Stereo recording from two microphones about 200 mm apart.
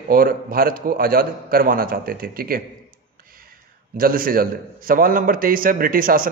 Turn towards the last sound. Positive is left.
turn(degrees=-45)  # may be behind; listen again after turning